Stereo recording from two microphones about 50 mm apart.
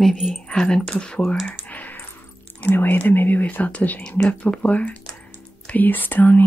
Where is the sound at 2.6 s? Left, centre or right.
Left.